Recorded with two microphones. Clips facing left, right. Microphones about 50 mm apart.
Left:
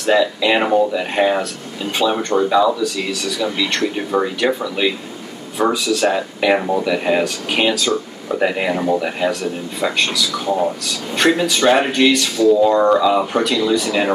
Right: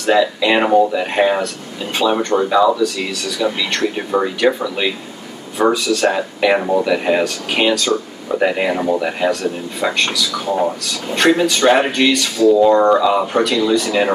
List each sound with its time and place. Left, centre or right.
0.0 s speech: centre
11.6 s speech: centre